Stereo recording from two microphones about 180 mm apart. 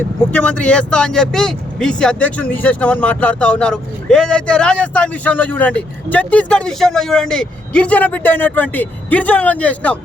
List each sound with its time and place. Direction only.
0.3 s speech: 5° left (ahead or behind)